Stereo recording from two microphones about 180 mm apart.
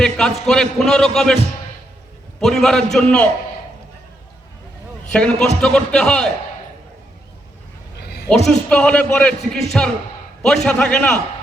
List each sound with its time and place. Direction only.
0.0 s a man's voice: 5° left (ahead or behind)
2.4 s a man's voice: centre (ahead or behind)
5.1 s a man's voice: 5° left (ahead or behind)
7.9 s a sound: 65° left (ahead or behind)
8.4 s a man's voice: 5° left (ahead or behind)